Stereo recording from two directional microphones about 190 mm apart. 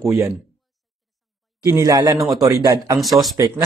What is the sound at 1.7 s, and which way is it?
Speech, 20° right (ahead or behind).